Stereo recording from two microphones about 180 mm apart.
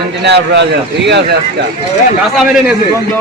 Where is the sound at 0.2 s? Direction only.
70° right (ahead or behind).